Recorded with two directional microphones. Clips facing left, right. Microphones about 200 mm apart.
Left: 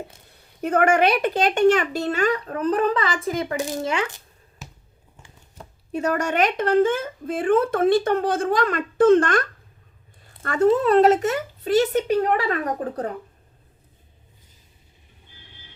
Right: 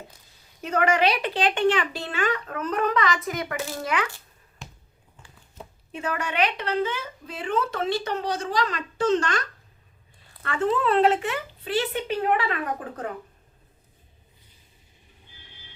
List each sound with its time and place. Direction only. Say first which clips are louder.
0.3 s speech: left 7 dB; 55° left (ahead or behind); by 4.2 s 25° left (ahead or behind)
4.6 s basketball bounce: left 1 dB; 5° left (ahead or behind)
5.9 s speech: left 7 dB; 40° left (ahead or behind)
10.4 s speech: left 6 dB; 40° left (ahead or behind)